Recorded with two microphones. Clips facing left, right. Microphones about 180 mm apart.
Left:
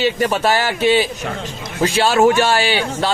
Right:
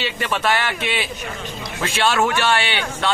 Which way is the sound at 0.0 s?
40° left (ahead or behind).